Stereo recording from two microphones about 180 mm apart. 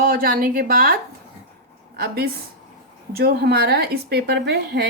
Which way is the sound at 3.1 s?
60° right (ahead or behind).